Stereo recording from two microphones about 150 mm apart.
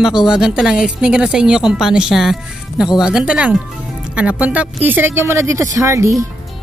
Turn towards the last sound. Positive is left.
turn(degrees=-20)  # may be behind; listen again after turning